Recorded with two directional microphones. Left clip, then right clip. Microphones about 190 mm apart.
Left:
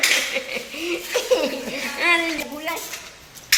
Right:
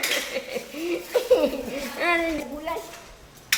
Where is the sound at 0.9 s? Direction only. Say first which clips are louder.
Even; 35° right (ahead or behind).